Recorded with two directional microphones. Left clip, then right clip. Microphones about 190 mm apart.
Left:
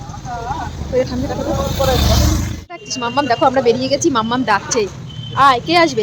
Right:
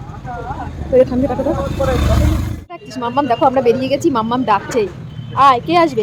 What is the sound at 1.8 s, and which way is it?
Speech, 25° left (ahead or behind).